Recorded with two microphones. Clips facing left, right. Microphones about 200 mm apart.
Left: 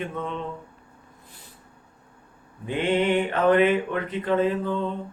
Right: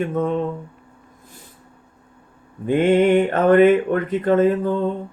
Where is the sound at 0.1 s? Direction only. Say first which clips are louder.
Right 10 dB; 45° right (ahead or behind).